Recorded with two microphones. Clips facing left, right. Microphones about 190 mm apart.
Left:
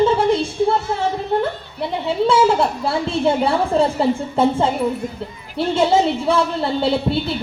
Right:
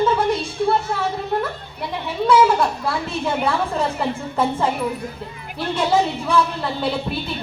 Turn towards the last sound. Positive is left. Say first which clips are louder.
# left 5 dB
turn(degrees=30)  # may be behind; listen again after turning